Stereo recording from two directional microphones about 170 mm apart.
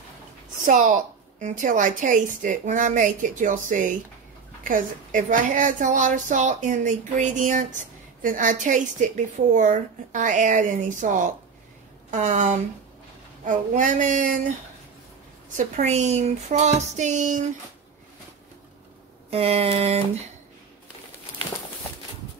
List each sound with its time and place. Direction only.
0.7 s a woman's voice: 50° right (ahead or behind)
15.5 s a woman's voice: 45° right (ahead or behind)
19.3 s a sound: 35° right (ahead or behind)